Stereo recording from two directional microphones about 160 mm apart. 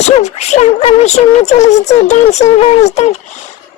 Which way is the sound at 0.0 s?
45° left (ahead or behind).